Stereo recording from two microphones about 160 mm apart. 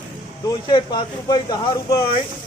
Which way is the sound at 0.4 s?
30° left (ahead or behind).